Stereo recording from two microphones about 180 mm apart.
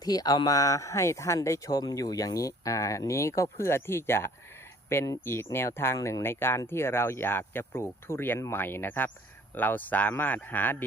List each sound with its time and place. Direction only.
0.0 s speech: 20° left (ahead or behind)